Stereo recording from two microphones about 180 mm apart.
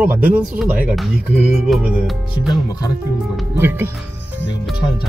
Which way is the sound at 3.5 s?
10° right (ahead or behind).